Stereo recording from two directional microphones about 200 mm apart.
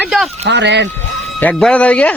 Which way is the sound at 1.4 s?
5° left (ahead or behind).